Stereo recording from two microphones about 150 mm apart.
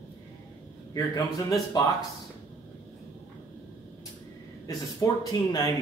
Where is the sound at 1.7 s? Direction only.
25° left (ahead or behind).